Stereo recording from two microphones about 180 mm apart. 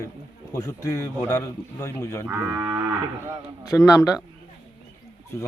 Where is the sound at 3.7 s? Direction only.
15° left (ahead or behind).